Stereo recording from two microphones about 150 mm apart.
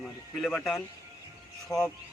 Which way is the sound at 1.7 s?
20° left (ahead or behind).